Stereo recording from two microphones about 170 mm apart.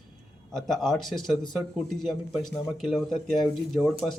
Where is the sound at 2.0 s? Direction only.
Centre (ahead or behind).